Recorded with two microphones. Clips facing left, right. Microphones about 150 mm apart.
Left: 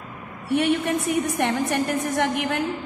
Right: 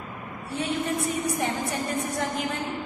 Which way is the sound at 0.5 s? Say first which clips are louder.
Left 7 dB; 75° left (ahead or behind).